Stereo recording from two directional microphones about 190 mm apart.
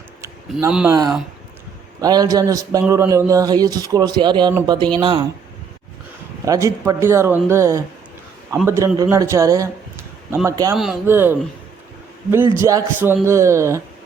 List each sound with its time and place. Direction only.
0.9 s speech: 20° right (ahead or behind)
6.4 s a man's voice: 15° right (ahead or behind)
10.8 s a man's voice: 5° right (ahead or behind)